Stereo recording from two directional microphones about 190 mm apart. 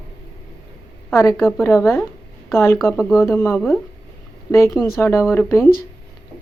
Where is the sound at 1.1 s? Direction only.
15° left (ahead or behind).